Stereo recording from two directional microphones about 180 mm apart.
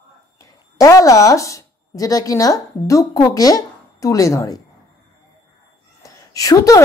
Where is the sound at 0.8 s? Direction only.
20° left (ahead or behind).